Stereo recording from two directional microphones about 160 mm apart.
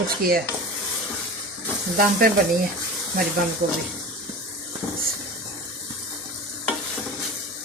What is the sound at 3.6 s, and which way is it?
Speech, 60° right (ahead or behind).